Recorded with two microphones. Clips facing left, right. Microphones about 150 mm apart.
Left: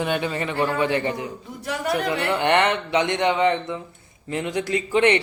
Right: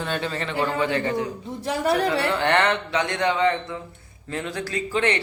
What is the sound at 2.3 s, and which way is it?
A man's voice, 20° left (ahead or behind).